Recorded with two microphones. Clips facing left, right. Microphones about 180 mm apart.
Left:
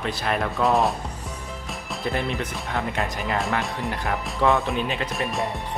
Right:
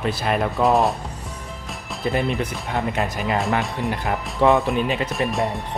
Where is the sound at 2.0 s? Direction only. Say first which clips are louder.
Right 4 dB; centre (ahead or behind).